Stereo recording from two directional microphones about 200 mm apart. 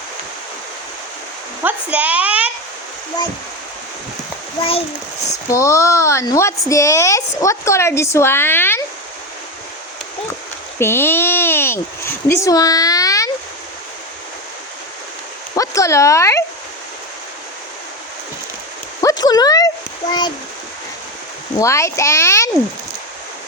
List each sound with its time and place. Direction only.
1.6 s speech: 5° right (ahead or behind)
5.5 s speech: 15° left (ahead or behind)
10.8 s a child's voice: 10° left (ahead or behind)
15.5 s speech: 15° left (ahead or behind)
19.0 s a sound: 20° left (ahead or behind)
21.6 s speech: 15° left (ahead or behind)